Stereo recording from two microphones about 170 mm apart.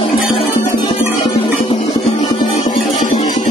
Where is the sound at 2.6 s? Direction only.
45° left (ahead or behind).